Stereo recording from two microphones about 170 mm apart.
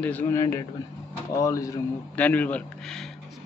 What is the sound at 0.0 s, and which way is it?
A man's voice, 10° left (ahead or behind).